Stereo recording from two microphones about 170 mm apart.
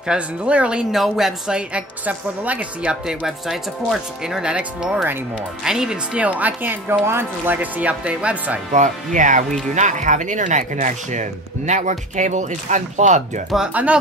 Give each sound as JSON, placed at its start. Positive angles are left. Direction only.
{"t": 0.0, "sound": "speech", "side_deg": -5}
{"t": 8.7, "sound": "speech", "side_deg": -45}
{"t": 13.5, "sound": "speech", "side_deg": -5}